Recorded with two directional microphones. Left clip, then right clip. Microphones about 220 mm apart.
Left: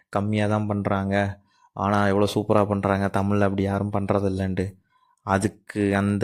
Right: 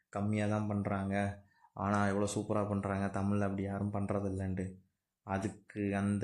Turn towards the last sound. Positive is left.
turn(degrees=40)  # may be behind; listen again after turning